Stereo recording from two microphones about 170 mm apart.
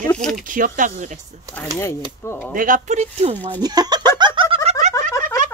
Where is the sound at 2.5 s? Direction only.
50° right (ahead or behind).